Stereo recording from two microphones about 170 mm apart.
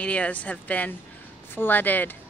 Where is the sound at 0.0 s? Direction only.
10° left (ahead or behind).